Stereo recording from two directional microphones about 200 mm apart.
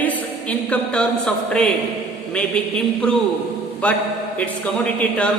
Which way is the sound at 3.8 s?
5° left (ahead or behind).